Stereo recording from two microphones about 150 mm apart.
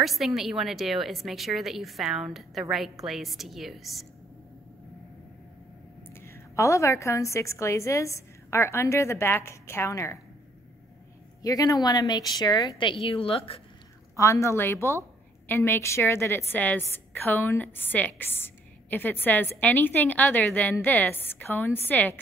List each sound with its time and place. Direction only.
0.0 s a woman's voice: centre (ahead or behind)
6.1 s a woman's voice: 15° left (ahead or behind)
11.4 s a woman's voice: 25° left (ahead or behind)
14.1 s a woman's voice: 20° left (ahead or behind)